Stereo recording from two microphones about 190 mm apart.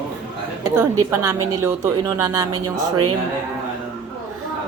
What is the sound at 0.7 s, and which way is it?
Speech, 15° right (ahead or behind).